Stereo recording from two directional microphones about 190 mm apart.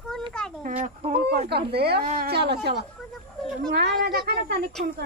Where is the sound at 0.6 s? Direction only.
35° right (ahead or behind).